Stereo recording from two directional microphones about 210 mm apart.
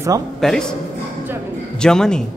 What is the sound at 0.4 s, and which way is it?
Speech, 5° left (ahead or behind).